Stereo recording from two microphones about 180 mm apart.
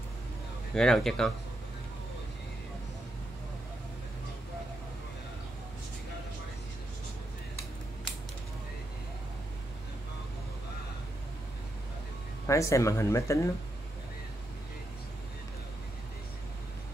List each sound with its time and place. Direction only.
0.7 s speech: 5° left (ahead or behind)
12.4 s speech: 15° left (ahead or behind)